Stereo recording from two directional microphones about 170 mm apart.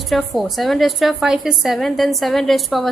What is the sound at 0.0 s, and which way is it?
A woman's voice, centre (ahead or behind).